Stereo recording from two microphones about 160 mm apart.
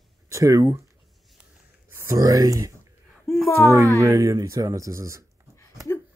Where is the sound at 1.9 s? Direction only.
15° right (ahead or behind).